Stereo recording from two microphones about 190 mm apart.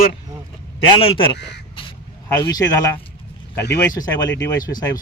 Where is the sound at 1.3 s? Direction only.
60° left (ahead or behind).